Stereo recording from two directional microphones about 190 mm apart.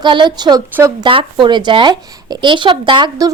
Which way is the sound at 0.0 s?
25° right (ahead or behind).